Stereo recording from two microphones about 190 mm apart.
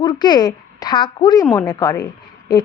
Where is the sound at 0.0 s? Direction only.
20° left (ahead or behind).